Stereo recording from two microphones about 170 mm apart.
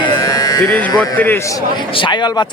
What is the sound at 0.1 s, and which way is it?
Electric shaver, 20° left (ahead or behind).